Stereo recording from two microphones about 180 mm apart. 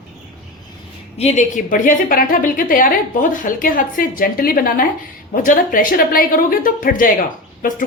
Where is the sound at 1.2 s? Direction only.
40° left (ahead or behind).